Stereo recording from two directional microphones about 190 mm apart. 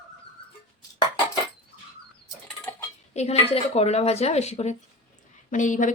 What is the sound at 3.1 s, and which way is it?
Speech, 35° left (ahead or behind).